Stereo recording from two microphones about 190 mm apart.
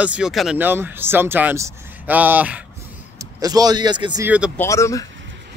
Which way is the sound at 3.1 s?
20° right (ahead or behind).